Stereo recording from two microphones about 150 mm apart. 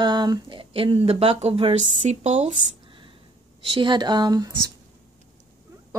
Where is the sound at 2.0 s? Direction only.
50° right (ahead or behind).